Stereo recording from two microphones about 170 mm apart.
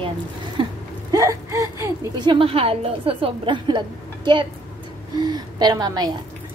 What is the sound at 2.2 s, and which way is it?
A woman's voice, 30° right (ahead or behind).